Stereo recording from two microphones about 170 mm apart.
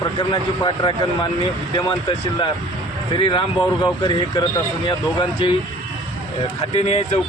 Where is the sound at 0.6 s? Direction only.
25° left (ahead or behind).